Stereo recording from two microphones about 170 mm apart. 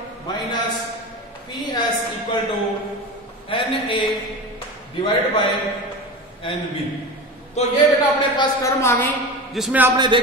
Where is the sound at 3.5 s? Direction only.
30° left (ahead or behind).